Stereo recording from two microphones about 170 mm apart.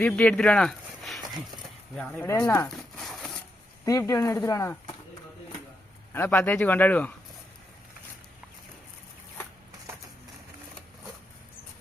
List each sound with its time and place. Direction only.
0.0 s speech: 10° left (ahead or behind)
2.2 s a sound: 10° left (ahead or behind)
3.8 s speech: 20° left (ahead or behind)
6.1 s speech: 15° left (ahead or behind)